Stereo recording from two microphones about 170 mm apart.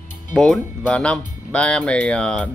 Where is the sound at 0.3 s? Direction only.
5° left (ahead or behind).